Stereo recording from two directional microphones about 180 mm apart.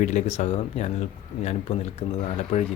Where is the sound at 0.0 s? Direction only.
40° left (ahead or behind).